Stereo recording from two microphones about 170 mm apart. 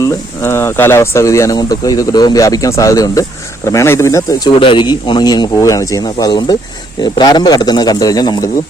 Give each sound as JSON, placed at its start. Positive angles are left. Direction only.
{"t": 0.4, "sound": "speech", "side_deg": 15}